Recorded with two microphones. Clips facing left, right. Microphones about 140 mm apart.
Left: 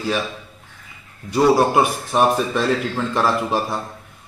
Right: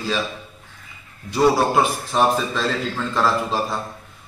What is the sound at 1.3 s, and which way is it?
A man's voice, 15° left (ahead or behind).